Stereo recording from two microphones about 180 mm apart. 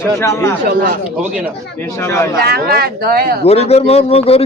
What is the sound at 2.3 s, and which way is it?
Speech, 60° right (ahead or behind).